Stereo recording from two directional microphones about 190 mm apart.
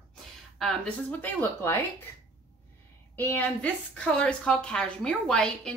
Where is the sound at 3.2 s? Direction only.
10° left (ahead or behind).